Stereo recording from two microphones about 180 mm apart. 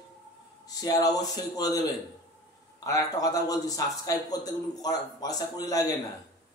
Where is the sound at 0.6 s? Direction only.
20° left (ahead or behind).